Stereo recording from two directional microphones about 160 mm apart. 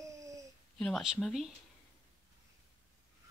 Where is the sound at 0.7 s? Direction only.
5° left (ahead or behind).